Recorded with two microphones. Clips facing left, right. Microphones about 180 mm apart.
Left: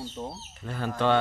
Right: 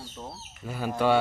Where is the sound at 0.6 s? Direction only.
10° right (ahead or behind).